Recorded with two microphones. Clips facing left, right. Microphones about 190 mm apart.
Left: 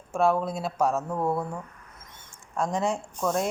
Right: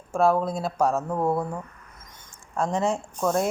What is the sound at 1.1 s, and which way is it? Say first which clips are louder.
Speech: right 3 dB; 20° right (ahead or behind).